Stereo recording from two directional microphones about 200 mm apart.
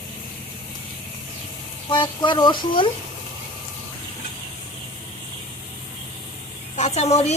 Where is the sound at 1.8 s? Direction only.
25° left (ahead or behind).